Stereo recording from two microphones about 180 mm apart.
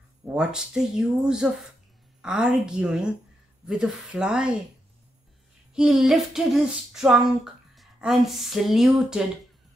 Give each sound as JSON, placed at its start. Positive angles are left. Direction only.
{"t": 0.2, "sound": "child singing", "side_deg": -5}
{"t": 5.8, "sound": "child singing", "side_deg": 0}
{"t": 7.7, "sound": "speech", "side_deg": 0}